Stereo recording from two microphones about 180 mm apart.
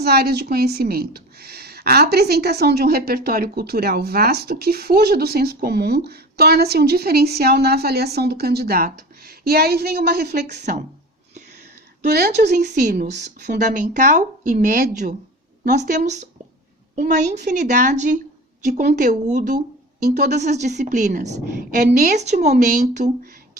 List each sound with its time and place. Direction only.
0.0 s a woman's voice: 60° right (ahead or behind)
12.1 s a woman's voice: 60° right (ahead or behind)
21.8 s a woman's voice: 55° right (ahead or behind)
22.1 s a woman's voice: 40° right (ahead or behind)